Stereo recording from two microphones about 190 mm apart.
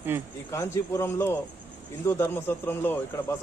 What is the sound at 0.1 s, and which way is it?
Speech, 10° right (ahead or behind).